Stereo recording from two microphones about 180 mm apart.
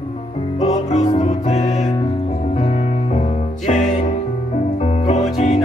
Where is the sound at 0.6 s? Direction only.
40° left (ahead or behind).